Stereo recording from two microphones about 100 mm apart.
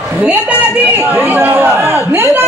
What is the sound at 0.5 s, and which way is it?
Speech, 10° right (ahead or behind).